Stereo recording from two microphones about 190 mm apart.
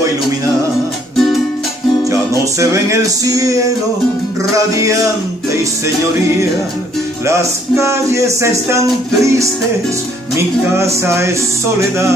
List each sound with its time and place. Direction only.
2.6 s music: 15° right (ahead or behind)
4.7 s music: 15° right (ahead or behind)
7.2 s music: 15° right (ahead or behind)